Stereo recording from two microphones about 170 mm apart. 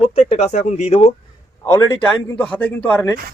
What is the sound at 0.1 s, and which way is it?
Speech, 40° left (ahead or behind).